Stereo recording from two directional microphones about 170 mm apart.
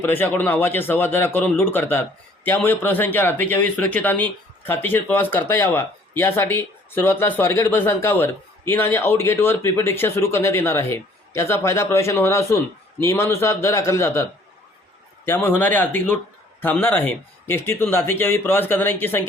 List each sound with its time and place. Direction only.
0.0 s a man's voice: 10° left (ahead or behind)